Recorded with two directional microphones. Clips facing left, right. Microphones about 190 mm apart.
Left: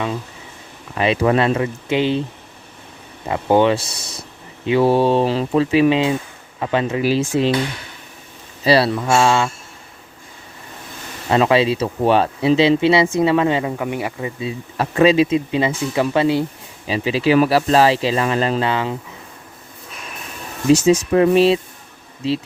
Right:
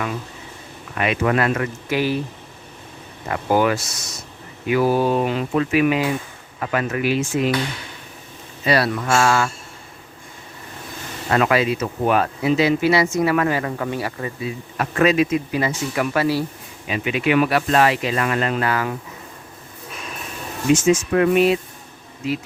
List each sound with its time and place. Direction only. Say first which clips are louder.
0.9 s speech: left 3 dB; 30° left (ahead or behind)
3.2 s speech: left 4 dB; 25° left (ahead or behind)
8.6 s speech: left 4 dB; 30° left (ahead or behind)
11.3 s speech: left 3 dB; 25° left (ahead or behind)
20.7 s speech: left 3 dB; 35° left (ahead or behind)